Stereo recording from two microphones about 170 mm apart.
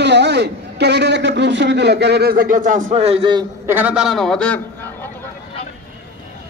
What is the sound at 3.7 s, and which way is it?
Speech, 10° right (ahead or behind).